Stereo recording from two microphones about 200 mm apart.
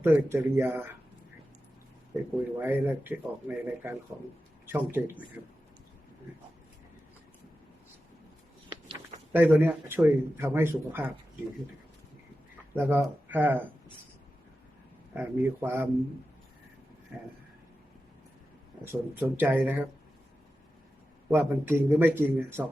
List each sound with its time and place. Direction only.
0.0 s a man's voice: 10° right (ahead or behind)
2.6 s a man's voice: 10° right (ahead or behind)
9.3 s a man's voice: 10° right (ahead or behind)
12.7 s a man's voice: 10° right (ahead or behind)
15.1 s a man's voice: 10° right (ahead or behind)
18.9 s a man's voice: 10° right (ahead or behind)
21.2 s a man's voice: 10° right (ahead or behind)